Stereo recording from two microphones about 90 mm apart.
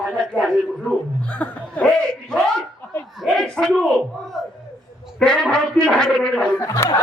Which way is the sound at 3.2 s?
5° left (ahead or behind).